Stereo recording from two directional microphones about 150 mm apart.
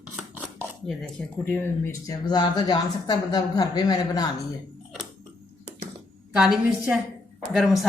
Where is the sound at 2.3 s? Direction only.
30° left (ahead or behind).